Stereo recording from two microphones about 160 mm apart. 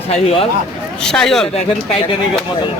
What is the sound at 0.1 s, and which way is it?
Speech, 40° left (ahead or behind).